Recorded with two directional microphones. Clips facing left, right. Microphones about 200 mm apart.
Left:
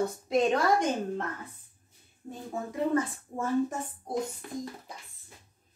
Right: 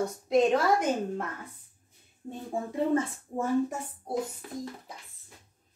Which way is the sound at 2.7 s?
25° right (ahead or behind).